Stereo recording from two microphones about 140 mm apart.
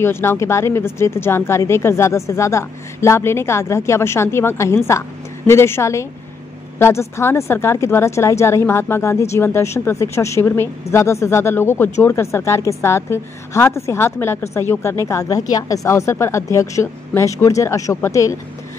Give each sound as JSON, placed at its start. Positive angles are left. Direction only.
{"t": 0.0, "sound": "a woman's voice", "side_deg": 15}